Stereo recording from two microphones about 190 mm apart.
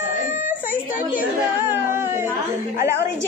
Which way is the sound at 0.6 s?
45° left (ahead or behind).